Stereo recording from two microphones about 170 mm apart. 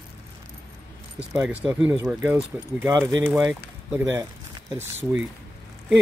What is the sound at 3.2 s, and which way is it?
Speech, 5° right (ahead or behind).